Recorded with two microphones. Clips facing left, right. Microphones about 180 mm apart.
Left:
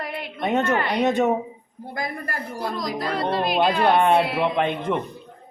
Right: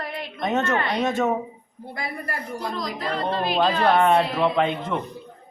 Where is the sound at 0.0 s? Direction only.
10° left (ahead or behind).